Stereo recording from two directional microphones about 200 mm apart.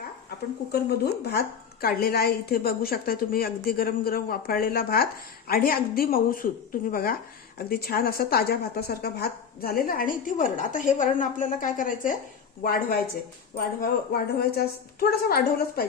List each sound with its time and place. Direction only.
0.7 s a woman's voice: 55° left (ahead or behind)